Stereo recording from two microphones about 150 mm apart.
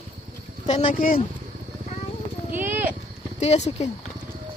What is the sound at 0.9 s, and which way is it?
Speech, 65° left (ahead or behind).